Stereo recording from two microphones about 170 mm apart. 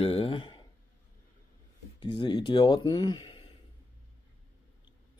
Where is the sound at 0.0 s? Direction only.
30° left (ahead or behind).